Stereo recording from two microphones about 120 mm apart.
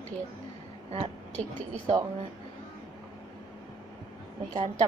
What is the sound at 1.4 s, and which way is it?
Speech, 60° right (ahead or behind).